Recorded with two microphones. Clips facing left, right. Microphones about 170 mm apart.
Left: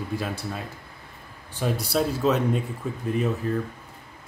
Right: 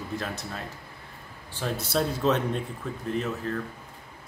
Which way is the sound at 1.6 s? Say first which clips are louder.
Left 3 dB; 10° left (ahead or behind).